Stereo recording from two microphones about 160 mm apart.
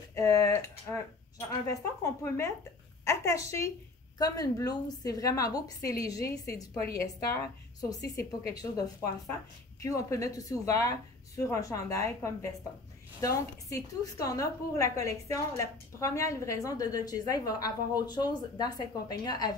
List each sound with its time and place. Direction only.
0.1 s a woman's voice: 20° left (ahead or behind)